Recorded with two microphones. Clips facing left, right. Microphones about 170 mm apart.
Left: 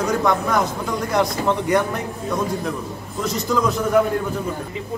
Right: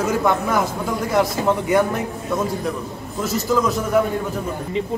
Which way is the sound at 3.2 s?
5° right (ahead or behind).